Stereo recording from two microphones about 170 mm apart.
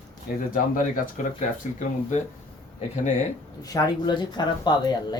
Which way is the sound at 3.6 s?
20° left (ahead or behind).